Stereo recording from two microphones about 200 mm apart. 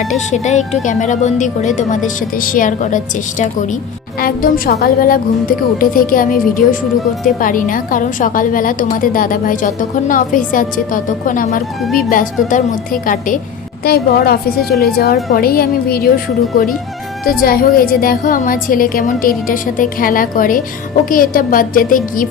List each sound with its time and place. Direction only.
0.3 s a woman's voice: 35° left (ahead or behind)
11.8 s speech: centre (ahead or behind)
12.1 s a woman's voice: 40° left (ahead or behind)